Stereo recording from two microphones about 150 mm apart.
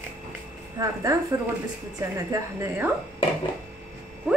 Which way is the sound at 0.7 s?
20° right (ahead or behind).